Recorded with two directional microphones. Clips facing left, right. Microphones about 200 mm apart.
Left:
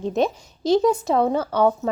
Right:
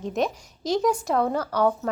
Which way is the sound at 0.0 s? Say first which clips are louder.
Left 4 dB; 30° left (ahead or behind).